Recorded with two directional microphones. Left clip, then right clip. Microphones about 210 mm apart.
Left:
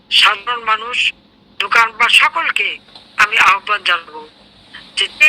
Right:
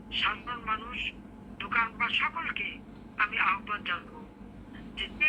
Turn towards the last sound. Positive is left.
turn(degrees=50)  # may be behind; listen again after turning